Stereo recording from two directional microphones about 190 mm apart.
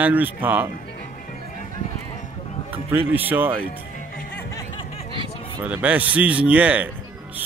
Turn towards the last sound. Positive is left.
turn(degrees=-10)  # may be behind; listen again after turning